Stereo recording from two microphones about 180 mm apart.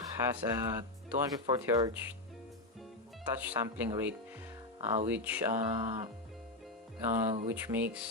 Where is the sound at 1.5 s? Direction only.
20° right (ahead or behind).